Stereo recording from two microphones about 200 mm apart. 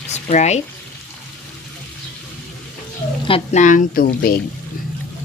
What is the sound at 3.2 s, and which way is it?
Speech, 30° left (ahead or behind).